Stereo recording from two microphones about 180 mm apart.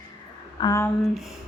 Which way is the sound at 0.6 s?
15° left (ahead or behind).